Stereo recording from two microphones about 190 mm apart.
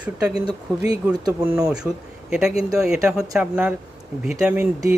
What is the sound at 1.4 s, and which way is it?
A man's voice, 5° right (ahead or behind).